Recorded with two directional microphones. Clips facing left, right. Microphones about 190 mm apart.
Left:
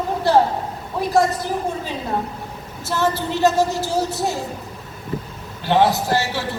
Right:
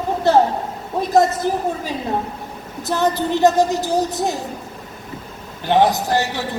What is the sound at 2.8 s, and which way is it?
A man's voice, 15° right (ahead or behind).